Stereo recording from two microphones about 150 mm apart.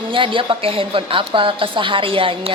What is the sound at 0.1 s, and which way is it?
A woman's voice, 35° right (ahead or behind).